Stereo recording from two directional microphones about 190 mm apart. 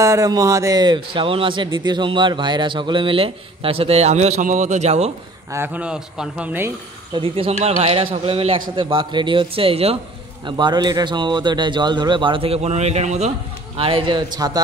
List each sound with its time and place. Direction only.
0.0 s a man's voice: 15° right (ahead or behind); by 5.1 s 35° right (ahead or behind)
5.5 s speech: 10° right (ahead or behind)
7.2 s a man's voice: 30° right (ahead or behind)